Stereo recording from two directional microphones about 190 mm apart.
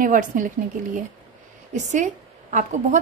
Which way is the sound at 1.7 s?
35° right (ahead or behind).